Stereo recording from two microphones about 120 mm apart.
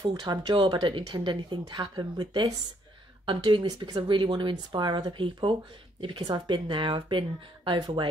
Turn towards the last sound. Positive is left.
turn(degrees=-40)  # may be behind; listen again after turning